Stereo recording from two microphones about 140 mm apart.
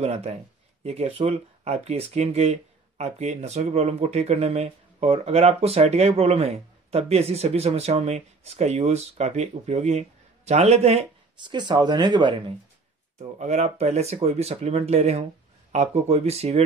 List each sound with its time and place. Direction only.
0.0 s speech: 50° right (ahead or behind)
11.4 s speech: 30° right (ahead or behind)
13.4 s speech: 55° right (ahead or behind)